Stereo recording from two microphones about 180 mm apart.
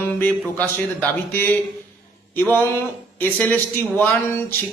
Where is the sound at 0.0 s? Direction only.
10° left (ahead or behind).